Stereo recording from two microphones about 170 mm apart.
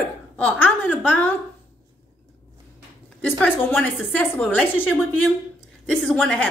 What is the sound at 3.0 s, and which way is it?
A woman's voice, 5° left (ahead or behind).